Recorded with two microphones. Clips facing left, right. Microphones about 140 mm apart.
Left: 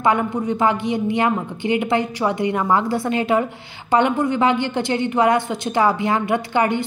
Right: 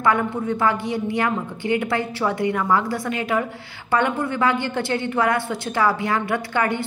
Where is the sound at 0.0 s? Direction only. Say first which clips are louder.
Left 2 dB; 20° left (ahead or behind).